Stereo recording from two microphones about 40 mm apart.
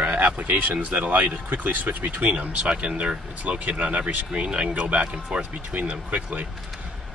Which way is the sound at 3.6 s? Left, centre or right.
Right.